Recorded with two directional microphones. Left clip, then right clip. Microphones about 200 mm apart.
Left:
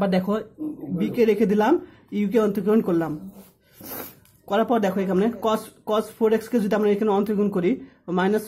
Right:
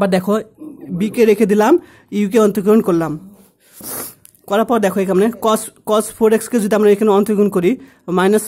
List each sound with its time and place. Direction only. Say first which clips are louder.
0.0 s speech: right 8 dB; 40° right (ahead or behind)